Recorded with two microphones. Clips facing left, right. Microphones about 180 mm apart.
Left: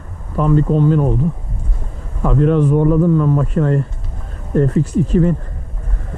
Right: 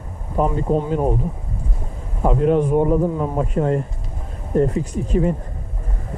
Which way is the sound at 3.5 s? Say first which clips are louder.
Left 3 dB; 10° right (ahead or behind).